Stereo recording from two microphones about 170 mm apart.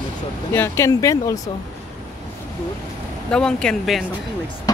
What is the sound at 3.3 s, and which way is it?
Speech, 5° left (ahead or behind).